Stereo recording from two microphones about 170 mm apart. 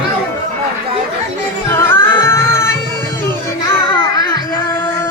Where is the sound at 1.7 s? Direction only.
15° left (ahead or behind).